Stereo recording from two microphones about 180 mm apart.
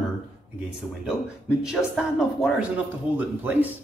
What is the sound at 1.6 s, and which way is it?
Speech, 5° right (ahead or behind).